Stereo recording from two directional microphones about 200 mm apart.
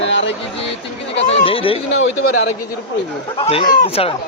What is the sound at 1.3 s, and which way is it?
Speech, 25° left (ahead or behind).